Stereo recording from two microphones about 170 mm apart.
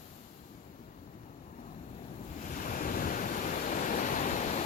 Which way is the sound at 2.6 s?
50° left (ahead or behind).